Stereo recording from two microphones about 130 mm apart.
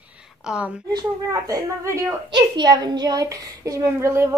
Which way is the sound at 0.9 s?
25° right (ahead or behind).